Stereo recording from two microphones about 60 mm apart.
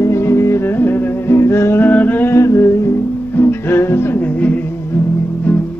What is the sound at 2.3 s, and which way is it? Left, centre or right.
Music, left.